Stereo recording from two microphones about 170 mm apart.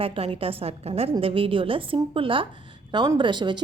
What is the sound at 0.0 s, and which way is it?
A woman's voice, 35° right (ahead or behind).